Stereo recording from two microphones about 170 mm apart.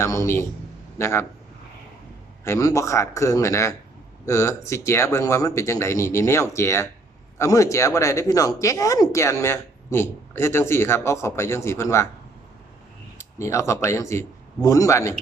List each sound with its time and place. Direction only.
0.0 s a man's voice: 20° left (ahead or behind)
2.4 s speech: 20° left (ahead or behind)
13.1 s speech: 15° left (ahead or behind)